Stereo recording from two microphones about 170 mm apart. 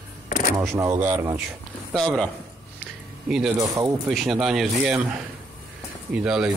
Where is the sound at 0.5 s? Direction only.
20° right (ahead or behind).